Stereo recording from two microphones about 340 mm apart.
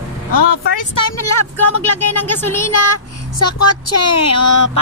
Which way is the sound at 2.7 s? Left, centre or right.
Left.